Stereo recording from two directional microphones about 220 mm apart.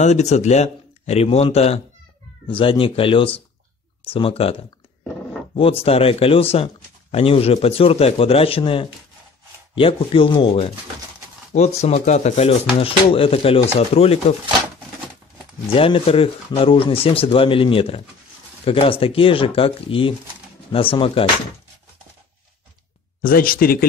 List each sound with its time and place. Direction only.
0.0 s speech: 30° left (ahead or behind)
5.6 s speech: 25° left (ahead or behind)
15.7 s speech: 25° left (ahead or behind)
23.2 s speech: 40° left (ahead or behind)